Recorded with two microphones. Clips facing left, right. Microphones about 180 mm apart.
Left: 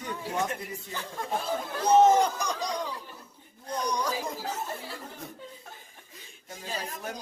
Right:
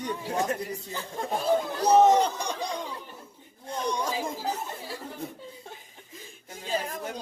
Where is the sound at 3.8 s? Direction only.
25° right (ahead or behind).